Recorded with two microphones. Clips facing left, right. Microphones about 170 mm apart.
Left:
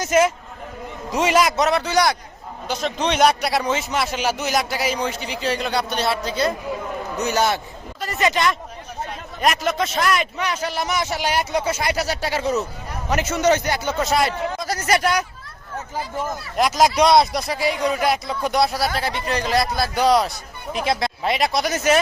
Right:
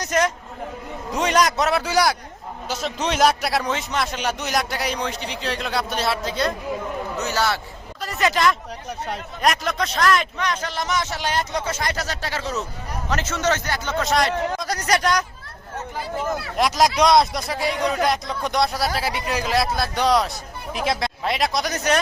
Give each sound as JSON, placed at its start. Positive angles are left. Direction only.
{"t": 0.0, "sound": "a man's voice", "side_deg": 5}
{"t": 7.2, "sound": "a man's voice", "side_deg": 15}
{"t": 8.0, "sound": "a man's voice", "side_deg": 0}
{"t": 16.6, "sound": "a man's voice", "side_deg": 0}
{"t": 18.9, "sound": "a man's voice", "side_deg": -5}